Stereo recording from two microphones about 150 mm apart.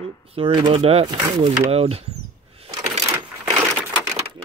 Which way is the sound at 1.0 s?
30° right (ahead or behind).